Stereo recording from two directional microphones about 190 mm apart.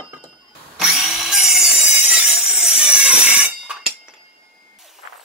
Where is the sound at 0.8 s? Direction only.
5° right (ahead or behind).